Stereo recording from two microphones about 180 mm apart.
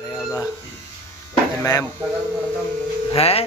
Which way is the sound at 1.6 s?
15° left (ahead or behind).